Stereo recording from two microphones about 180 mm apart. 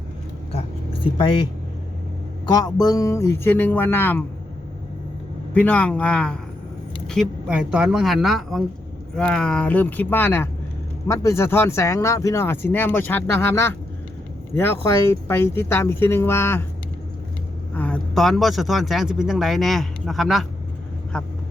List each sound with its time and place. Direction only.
1.0 s speech: 25° left (ahead or behind)
2.5 s speech: 20° left (ahead or behind)
5.5 s speech: 10° left (ahead or behind)
17.7 s speech: 5° left (ahead or behind)